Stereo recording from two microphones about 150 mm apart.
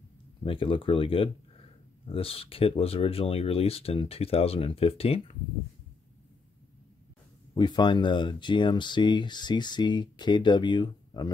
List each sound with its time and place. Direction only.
0.4 s speech: 35° left (ahead or behind)
7.5 s speech: 30° left (ahead or behind)